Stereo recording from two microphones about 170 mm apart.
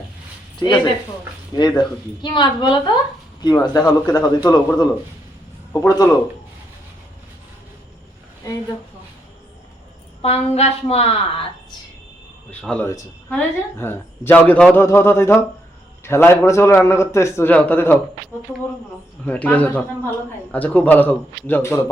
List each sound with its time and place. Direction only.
0.6 s a man's voice: 25° left (ahead or behind)
10.2 s a woman's voice: 35° left (ahead or behind)
12.5 s a man's voice: 10° left (ahead or behind)
19.2 s a man's voice: 10° left (ahead or behind)